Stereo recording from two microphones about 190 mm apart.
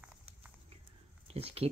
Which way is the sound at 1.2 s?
30° right (ahead or behind).